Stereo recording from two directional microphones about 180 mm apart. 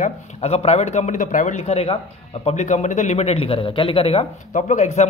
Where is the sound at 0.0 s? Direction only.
35° left (ahead or behind).